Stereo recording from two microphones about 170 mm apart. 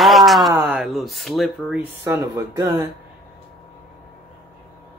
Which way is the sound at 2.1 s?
20° right (ahead or behind).